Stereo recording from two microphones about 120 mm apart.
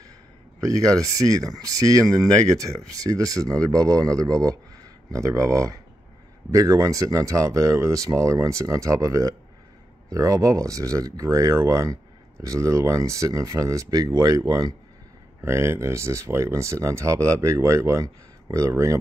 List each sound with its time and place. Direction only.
0.6 s speech: 30° right (ahead or behind)